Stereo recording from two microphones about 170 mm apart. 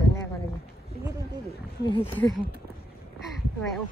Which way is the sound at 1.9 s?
30° left (ahead or behind).